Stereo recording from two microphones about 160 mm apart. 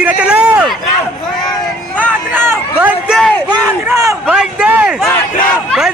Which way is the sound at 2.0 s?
15° right (ahead or behind).